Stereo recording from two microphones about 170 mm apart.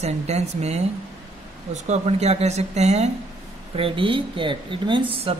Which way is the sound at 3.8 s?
30° right (ahead or behind).